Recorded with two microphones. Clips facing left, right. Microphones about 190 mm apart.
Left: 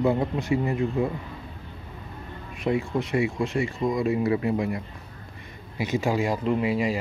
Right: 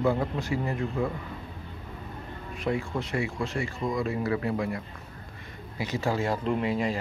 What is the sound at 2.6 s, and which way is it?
Speech, 20° left (ahead or behind).